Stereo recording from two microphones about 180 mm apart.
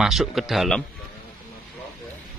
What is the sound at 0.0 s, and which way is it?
Speech, centre (ahead or behind).